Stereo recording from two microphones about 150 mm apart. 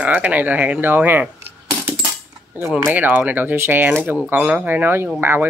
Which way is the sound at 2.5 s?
15° right (ahead or behind).